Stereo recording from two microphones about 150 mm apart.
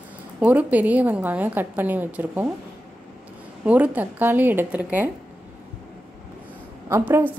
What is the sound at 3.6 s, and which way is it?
A woman's voice, 10° right (ahead or behind).